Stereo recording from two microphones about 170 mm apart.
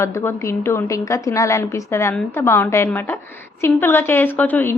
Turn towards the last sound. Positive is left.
turn(degrees=10)  # may be behind; listen again after turning